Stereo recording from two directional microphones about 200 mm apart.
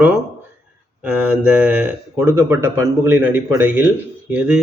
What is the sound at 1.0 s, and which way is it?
A man's voice, 5° right (ahead or behind).